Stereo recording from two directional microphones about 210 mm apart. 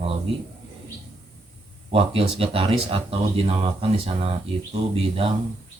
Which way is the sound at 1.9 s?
25° right (ahead or behind).